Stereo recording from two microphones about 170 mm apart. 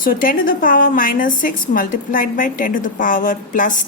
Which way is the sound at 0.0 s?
55° left (ahead or behind).